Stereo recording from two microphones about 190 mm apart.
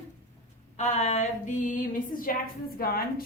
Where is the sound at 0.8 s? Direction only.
40° left (ahead or behind).